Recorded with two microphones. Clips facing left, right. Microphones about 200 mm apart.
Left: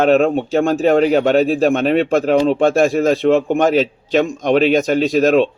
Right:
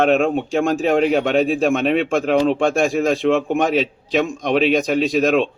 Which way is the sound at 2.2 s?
35° left (ahead or behind).